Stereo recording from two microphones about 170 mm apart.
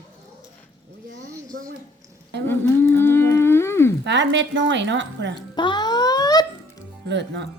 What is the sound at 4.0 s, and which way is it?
A woman's voice, 90° right.